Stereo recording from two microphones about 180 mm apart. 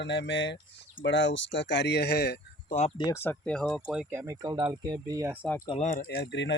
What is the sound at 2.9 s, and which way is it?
Speech, 20° left (ahead or behind).